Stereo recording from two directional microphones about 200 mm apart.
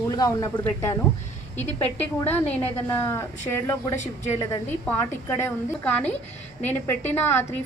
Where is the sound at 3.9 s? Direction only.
35° left (ahead or behind).